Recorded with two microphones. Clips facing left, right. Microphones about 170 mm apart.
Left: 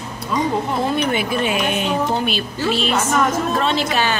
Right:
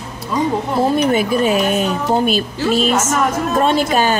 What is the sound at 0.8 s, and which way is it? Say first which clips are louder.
A woman's voice: right 9 dB; 40° right (ahead or behind).